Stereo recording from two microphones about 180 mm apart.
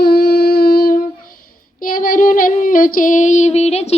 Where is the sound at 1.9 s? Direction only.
50° left (ahead or behind).